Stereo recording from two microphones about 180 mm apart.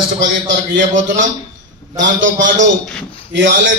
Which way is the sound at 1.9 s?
90° right.